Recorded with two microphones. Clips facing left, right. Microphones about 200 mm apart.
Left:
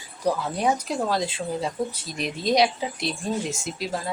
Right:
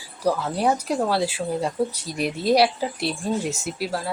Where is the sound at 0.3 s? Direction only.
5° right (ahead or behind).